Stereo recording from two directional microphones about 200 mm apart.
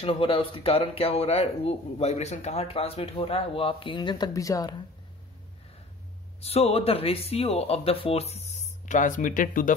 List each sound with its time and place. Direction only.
0.0 s speech: 30° left (ahead or behind)
6.4 s speech: 30° left (ahead or behind)